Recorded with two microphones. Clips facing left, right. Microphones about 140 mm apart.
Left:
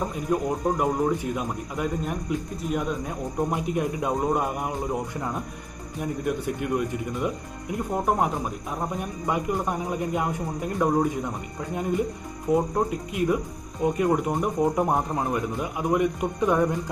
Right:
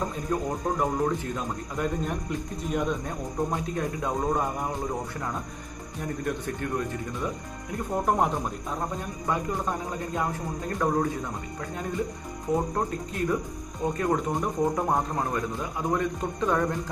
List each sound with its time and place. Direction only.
0.3 s a man's voice: 15° left (ahead or behind)
6.2 s a man's voice: 10° left (ahead or behind)
9.0 s a man's voice: 15° left (ahead or behind)